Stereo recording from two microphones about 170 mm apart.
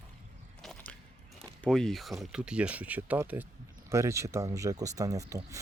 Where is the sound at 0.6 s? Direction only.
Centre (ahead or behind).